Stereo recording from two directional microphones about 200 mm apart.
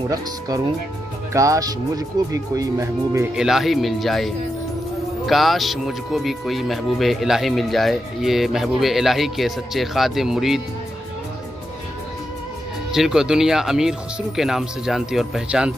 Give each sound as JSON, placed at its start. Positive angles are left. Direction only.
{"t": 1.3, "sound": "speech", "side_deg": -15}
{"t": 3.3, "sound": "speech", "side_deg": 0}
{"t": 12.9, "sound": "speech", "side_deg": 0}